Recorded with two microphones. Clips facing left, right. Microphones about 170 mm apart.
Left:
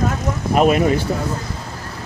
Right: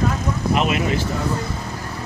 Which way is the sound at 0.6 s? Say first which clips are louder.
Left 9 dB; 45° left (ahead or behind).